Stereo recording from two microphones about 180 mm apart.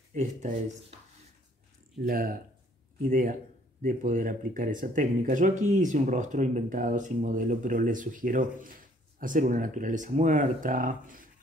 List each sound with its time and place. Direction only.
0.1 s speech: 40° right (ahead or behind)
2.0 s speech: 55° right (ahead or behind)